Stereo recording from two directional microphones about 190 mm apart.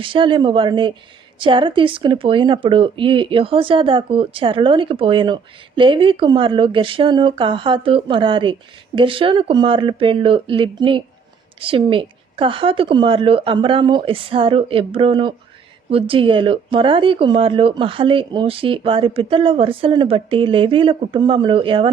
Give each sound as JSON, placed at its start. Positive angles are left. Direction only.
{"t": 0.0, "sound": "speech", "side_deg": -25}